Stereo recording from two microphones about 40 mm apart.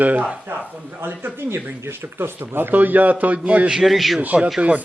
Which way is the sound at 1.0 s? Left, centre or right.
Right.